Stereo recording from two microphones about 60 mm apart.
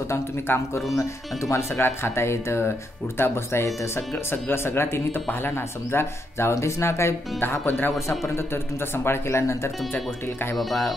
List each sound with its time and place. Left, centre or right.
0.1 s speech: left
8.9 s speech: left
10.5 s speech: centre